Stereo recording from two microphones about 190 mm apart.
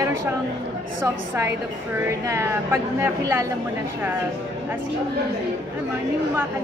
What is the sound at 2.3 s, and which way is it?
Speech, 15° right (ahead or behind).